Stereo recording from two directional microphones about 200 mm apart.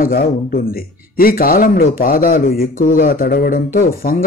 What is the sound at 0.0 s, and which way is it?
A man's voice, 50° left (ahead or behind).